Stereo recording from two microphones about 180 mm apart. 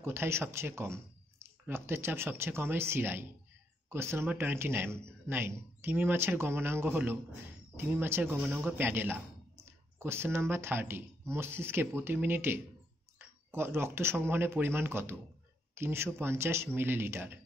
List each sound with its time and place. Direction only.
0.0 s speech: 15° right (ahead or behind)